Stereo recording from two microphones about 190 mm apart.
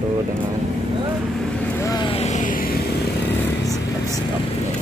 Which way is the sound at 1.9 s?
25° left (ahead or behind).